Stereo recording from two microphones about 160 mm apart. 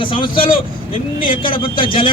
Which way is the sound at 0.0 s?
30° left (ahead or behind).